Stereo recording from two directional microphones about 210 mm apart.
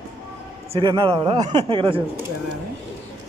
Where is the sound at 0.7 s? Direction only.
20° right (ahead or behind).